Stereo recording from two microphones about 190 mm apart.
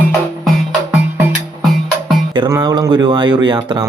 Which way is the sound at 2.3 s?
20° right (ahead or behind).